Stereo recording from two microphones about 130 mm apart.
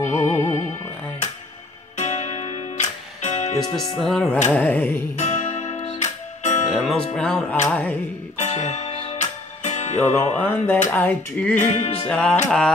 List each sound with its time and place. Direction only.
0.0 s music: 20° left (ahead or behind)
2.0 s music: 60° left (ahead or behind)
4.0 s music: 5° left (ahead or behind)
5.1 s music: 65° left (ahead or behind)
6.7 s speech: centre (ahead or behind)
7.2 s music: 5° left (ahead or behind)
8.4 s music: 65° left (ahead or behind)
8.9 s music: 45° left (ahead or behind)
9.2 s music: 65° left (ahead or behind)
10.3 s music: 15° left (ahead or behind)
11.5 s music: 60° left (ahead or behind)
12.1 s music: 10° left (ahead or behind)